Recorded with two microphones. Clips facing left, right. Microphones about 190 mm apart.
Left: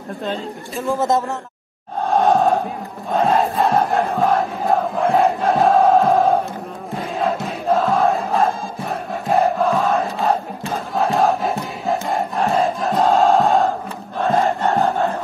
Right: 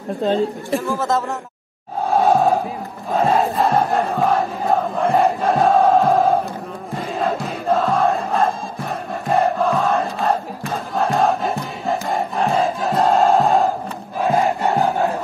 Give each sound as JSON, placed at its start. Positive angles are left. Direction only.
{"t": 0.8, "sound": "speech", "side_deg": 20}
{"t": 2.0, "sound": "crowd", "side_deg": -5}
{"t": 7.0, "sound": "music", "side_deg": 0}
{"t": 11.0, "sound": "crowd", "side_deg": 0}
{"t": 14.2, "sound": "crowd", "side_deg": -15}